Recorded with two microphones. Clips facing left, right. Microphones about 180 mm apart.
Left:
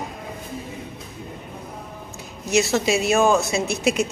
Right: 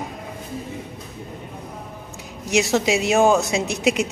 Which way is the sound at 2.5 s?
15° right (ahead or behind).